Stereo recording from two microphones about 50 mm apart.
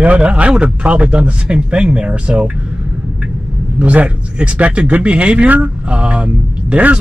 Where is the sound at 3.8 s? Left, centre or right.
Right.